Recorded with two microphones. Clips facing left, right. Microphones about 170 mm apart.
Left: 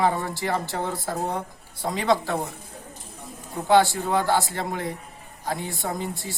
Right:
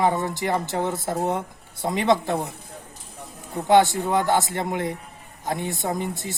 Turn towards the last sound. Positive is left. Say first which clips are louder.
# right 3 dB
turn(degrees=-20)  # may be behind; listen again after turning